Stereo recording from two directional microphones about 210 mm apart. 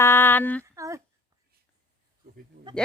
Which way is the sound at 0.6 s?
15° right (ahead or behind).